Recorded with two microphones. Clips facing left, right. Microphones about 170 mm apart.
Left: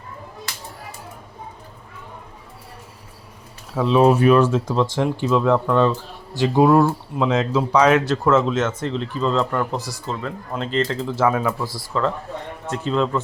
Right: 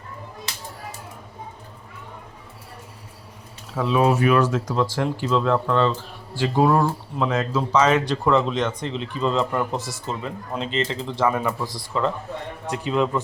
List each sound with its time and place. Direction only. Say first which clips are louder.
3.8 s speech: left 4 dB; 25° left (ahead or behind)
6.7 s speech: left 4 dB; 5° left (ahead or behind)
7.3 s speech: left 4 dB; 20° left (ahead or behind)
9.0 s speech: left 1 dB; 10° right (ahead or behind)
9.7 s speech: left 1 dB; centre (ahead or behind)
10.1 s speech: left 2 dB; 15° right (ahead or behind)
10.8 s speech: left 4 dB; centre (ahead or behind)
12.7 s speech: left 1 dB; 15° right (ahead or behind)